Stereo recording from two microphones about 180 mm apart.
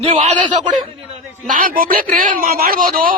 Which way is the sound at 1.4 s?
50° right (ahead or behind).